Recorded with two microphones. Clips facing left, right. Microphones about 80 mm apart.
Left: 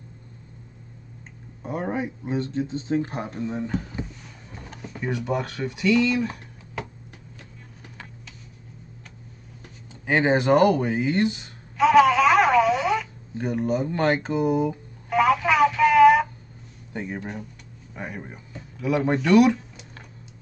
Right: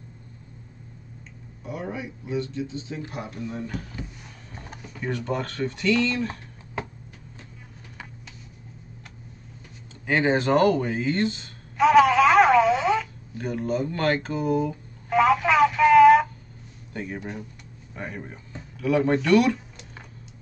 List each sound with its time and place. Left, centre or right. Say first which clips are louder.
1.6 s speech: left 5 dB; left
5.0 s speech: left 2 dB; centre
10.0 s speech: left 2 dB; centre
11.7 s a sound: even; centre
12.4 s telephone: right 1 dB; centre
13.3 s speech: left 3 dB; centre
15.1 s telephone: even; centre
15.4 s a sound: even; centre
16.9 s speech: left 1 dB; centre
17.2 s speech: left 1 dB; centre